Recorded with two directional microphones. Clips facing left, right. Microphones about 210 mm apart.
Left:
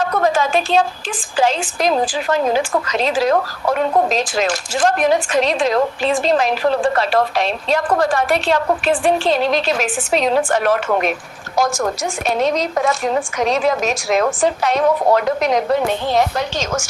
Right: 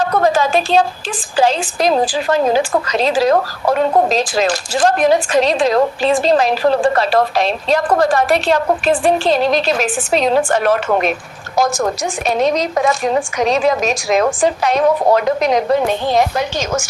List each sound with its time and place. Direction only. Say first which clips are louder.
0.0 s a woman's voice: right 3 dB; 35° right (ahead or behind)
12.4 s a woman's voice: right 3 dB; 15° right (ahead or behind)